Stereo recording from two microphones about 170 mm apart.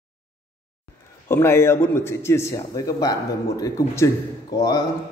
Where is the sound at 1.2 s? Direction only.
15° left (ahead or behind).